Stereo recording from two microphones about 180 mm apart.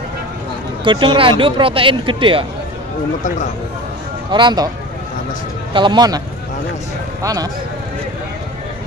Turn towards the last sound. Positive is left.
turn(degrees=-20)  # may be behind; listen again after turning